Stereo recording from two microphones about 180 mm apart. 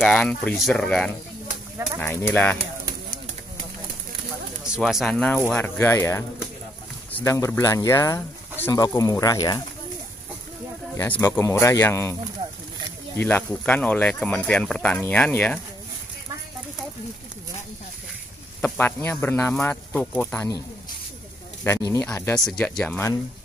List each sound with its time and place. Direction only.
0.0 s speech: 5° left (ahead or behind)
4.6 s speech: 5° right (ahead or behind); by 9.6 s 20° left (ahead or behind)
11.0 s speech: 15° left (ahead or behind)
18.6 s speech: 10° left (ahead or behind)
21.6 s speech: 15° left (ahead or behind)